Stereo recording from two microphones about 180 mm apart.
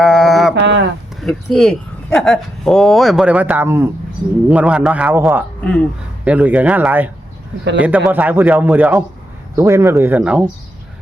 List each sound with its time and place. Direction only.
0.0 s mantra: centre (ahead or behind)
0.6 s a sound: 75° right (ahead or behind)
1.2 s a man's voice: centre (ahead or behind)
5.6 s speech: 5° left (ahead or behind)
6.2 s a man's voice: 10° right (ahead or behind)